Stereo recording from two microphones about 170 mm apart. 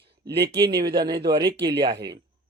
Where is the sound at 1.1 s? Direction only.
25° right (ahead or behind).